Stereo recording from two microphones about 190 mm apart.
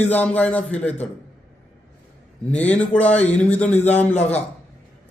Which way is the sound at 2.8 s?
10° left (ahead or behind).